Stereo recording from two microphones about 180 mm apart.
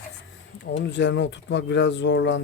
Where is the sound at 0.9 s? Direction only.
80° left.